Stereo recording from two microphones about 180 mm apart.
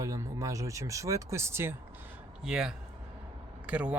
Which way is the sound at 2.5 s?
5° right (ahead or behind).